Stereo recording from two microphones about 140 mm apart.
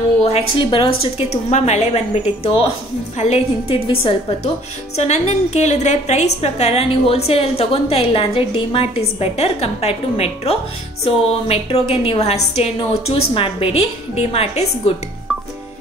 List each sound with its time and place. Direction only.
0.2 s a woman's voice: 40° left (ahead or behind)
1.1 s a woman's voice: 50° left (ahead or behind)